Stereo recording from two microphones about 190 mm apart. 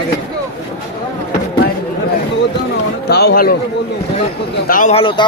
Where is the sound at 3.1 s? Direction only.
60° left (ahead or behind).